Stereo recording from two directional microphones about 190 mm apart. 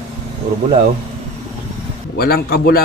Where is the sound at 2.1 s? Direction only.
55° left (ahead or behind).